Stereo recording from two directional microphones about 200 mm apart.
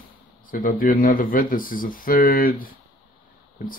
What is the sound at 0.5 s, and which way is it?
Speech, 45° left (ahead or behind).